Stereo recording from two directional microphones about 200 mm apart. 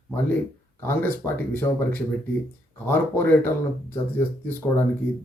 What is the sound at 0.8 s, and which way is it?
Speech, 10° left (ahead or behind).